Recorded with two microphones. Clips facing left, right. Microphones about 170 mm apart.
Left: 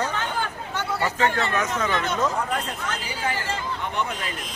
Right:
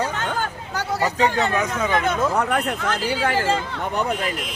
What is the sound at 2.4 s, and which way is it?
Speech, 65° right (ahead or behind).